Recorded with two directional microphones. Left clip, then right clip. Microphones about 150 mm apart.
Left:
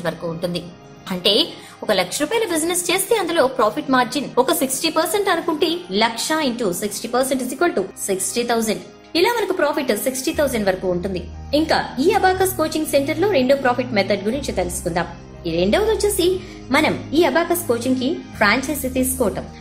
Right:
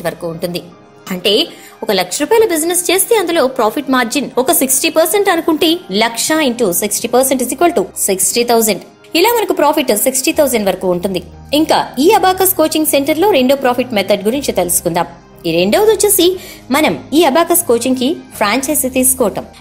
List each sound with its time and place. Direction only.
0.0 s a woman's voice: 35° right (ahead or behind)
1.9 s a woman's voice: 40° right (ahead or behind)
16.6 s a woman's voice: 35° right (ahead or behind)